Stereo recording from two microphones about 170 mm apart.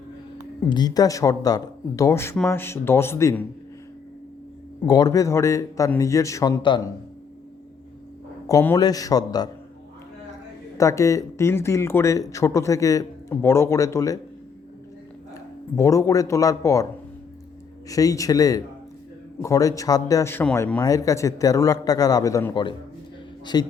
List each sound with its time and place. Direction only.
0.3 s speech: 25° left (ahead or behind)
4.9 s speech: 20° left (ahead or behind)
8.4 s speech: 20° left (ahead or behind)
10.8 s speech: 20° left (ahead or behind)
15.7 s speech: 20° left (ahead or behind)
17.8 s speech: 20° left (ahead or behind)